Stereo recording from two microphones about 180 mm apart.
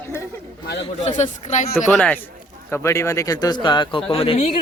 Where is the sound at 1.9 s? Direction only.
10° left (ahead or behind).